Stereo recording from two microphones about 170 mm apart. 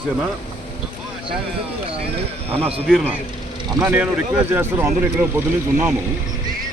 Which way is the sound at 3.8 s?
10° right (ahead or behind).